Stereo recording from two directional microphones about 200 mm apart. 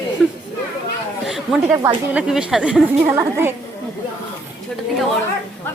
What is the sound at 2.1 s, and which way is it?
A woman's voice, 5° right (ahead or behind).